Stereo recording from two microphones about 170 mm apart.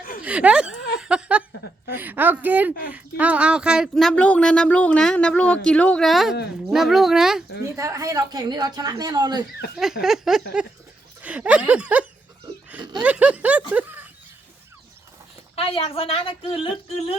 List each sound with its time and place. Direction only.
0.0 s a sound: 55° left (ahead or behind)
0.3 s chuckle: 5° right (ahead or behind)
2.0 s speech: 10° right (ahead or behind)
7.8 s speech: 20° right (ahead or behind)
10.0 s speech: centre (ahead or behind)
13.0 s a sound: 10° right (ahead or behind)
15.5 s speech: 35° left (ahead or behind)